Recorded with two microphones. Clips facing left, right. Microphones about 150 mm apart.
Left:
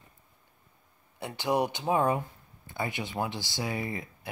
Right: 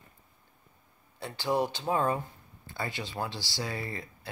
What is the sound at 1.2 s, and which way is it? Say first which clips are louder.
Speech: left 1 dB; 20° left (ahead or behind).